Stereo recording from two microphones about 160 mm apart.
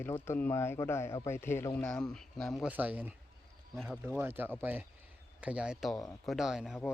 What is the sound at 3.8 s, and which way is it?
Speech, centre (ahead or behind).